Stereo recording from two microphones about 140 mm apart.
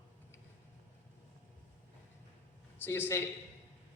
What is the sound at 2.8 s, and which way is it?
Speech, 15° left (ahead or behind).